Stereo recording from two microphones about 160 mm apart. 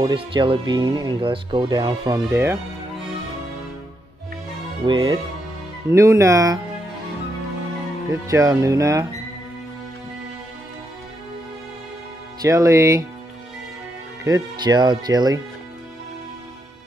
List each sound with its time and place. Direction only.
0.0 s speech: 30° right (ahead or behind)
4.8 s speech: 30° right (ahead or behind)
5.9 s speech: 20° right (ahead or behind)
8.1 s speech: 20° right (ahead or behind)
12.4 s speech: 20° right (ahead or behind)
14.2 s speech: 25° right (ahead or behind)